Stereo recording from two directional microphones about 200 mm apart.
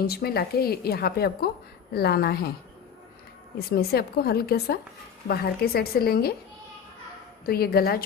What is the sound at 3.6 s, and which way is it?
A woman's voice, 50° left (ahead or behind).